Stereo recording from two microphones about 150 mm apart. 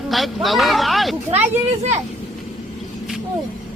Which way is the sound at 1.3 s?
45° right (ahead or behind).